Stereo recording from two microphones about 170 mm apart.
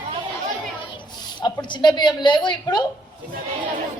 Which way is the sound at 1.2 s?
25° left (ahead or behind).